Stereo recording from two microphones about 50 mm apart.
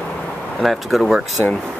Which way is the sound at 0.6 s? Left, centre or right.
Centre.